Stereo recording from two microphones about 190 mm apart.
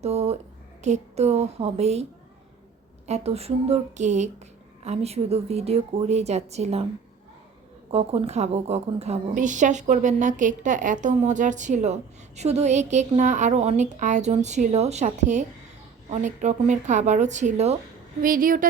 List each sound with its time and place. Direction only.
0.0 s a woman's voice: 35° right (ahead or behind)
3.1 s a woman's voice: 35° right (ahead or behind)
7.9 s a woman's voice: 30° right (ahead or behind)